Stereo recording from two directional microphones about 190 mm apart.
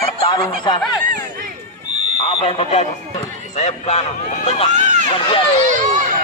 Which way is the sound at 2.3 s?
30° left (ahead or behind).